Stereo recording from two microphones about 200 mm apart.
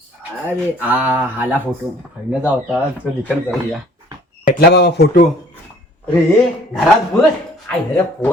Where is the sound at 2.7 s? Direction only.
5° right (ahead or behind).